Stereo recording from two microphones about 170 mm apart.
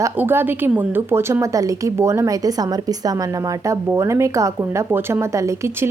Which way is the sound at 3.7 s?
15° right (ahead or behind).